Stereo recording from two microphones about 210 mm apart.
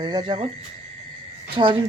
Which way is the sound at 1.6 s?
25° right (ahead or behind).